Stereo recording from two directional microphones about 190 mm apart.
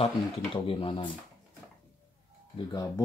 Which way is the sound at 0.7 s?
30° left (ahead or behind).